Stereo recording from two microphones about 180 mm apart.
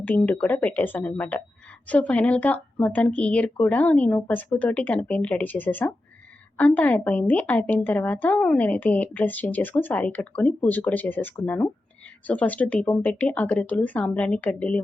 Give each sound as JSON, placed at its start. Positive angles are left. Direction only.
{"t": 0.0, "sound": "a woman's voice", "side_deg": 10}